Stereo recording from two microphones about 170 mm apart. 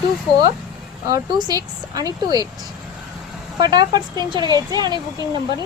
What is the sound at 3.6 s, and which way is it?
Speech, 25° right (ahead or behind).